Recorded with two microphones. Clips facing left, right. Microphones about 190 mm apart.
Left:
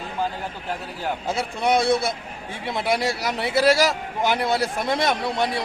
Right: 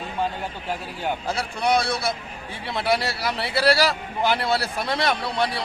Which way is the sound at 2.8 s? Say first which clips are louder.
Even; 20° left (ahead or behind).